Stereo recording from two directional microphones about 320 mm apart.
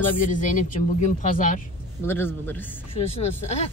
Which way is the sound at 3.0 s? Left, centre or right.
Centre.